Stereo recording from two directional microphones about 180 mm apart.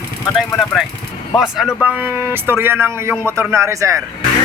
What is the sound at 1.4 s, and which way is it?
A man's voice, centre (ahead or behind).